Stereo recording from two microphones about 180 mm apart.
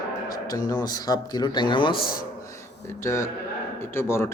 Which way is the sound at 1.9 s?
55° left (ahead or behind).